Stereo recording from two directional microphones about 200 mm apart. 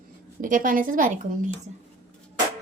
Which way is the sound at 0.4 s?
40° right (ahead or behind).